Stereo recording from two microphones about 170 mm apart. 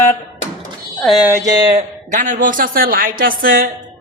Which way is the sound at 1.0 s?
Centre (ahead or behind).